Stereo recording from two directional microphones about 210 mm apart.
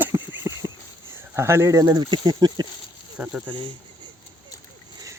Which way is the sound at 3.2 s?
5° right (ahead or behind).